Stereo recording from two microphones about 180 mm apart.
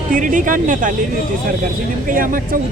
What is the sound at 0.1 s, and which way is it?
Speech, 45° right (ahead or behind).